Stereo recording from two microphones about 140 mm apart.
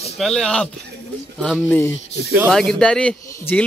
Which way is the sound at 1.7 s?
15° left (ahead or behind).